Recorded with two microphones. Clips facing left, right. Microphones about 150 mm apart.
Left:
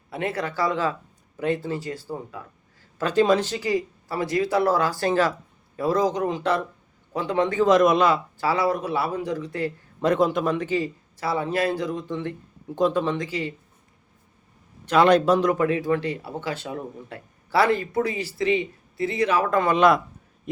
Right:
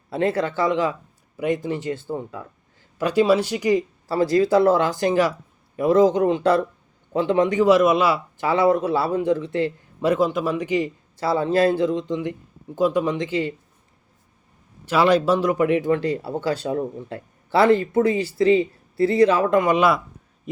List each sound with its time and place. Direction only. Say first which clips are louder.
0.1 s a man's voice: right 6 dB; 30° right (ahead or behind)
3.0 s a man's voice: right 2 dB; 10° right (ahead or behind)
8.4 s a man's voice: right 5 dB; 20° right (ahead or behind)
10.0 s a man's voice: right 1 dB; 5° right (ahead or behind); by 13.5 s 25° right (ahead or behind)
14.8 s a man's voice: even; 5° right (ahead or behind)
15.6 s a man's voice: right 3 dB; 20° right (ahead or behind)
17.5 s a man's voice: right 4 dB; 25° right (ahead or behind)
19.5 s a man's voice: left 2 dB; 15° right (ahead or behind)